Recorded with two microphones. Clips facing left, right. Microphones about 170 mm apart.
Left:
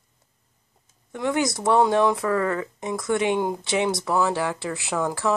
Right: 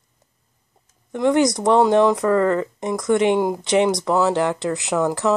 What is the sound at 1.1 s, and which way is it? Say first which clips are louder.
Speech: right 7 dB; 20° right (ahead or behind).